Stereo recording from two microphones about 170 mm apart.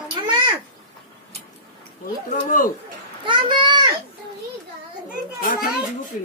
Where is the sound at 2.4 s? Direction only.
50° left (ahead or behind).